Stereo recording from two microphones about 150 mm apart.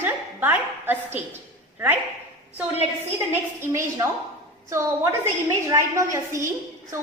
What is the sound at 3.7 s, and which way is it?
Speech, 20° right (ahead or behind).